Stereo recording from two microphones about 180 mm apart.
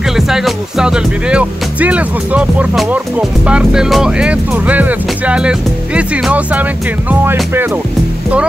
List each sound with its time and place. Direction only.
0.1 s speech: centre (ahead or behind)